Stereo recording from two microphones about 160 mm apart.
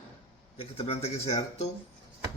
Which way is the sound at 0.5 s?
35° left (ahead or behind).